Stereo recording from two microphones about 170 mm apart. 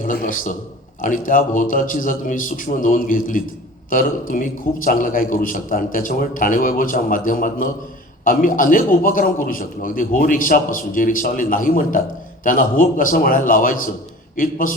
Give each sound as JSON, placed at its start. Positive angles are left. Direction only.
{"t": 0.0, "sound": "a man's voice", "side_deg": 50}